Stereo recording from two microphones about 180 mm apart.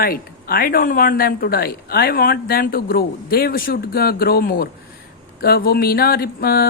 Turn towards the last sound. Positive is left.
turn(degrees=60)  # may be behind; listen again after turning